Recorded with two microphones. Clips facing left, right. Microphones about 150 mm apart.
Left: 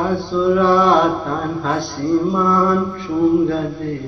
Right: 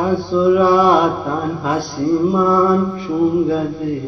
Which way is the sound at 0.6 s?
15° right (ahead or behind).